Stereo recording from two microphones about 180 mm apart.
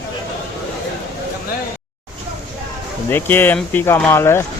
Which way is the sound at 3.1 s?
10° left (ahead or behind).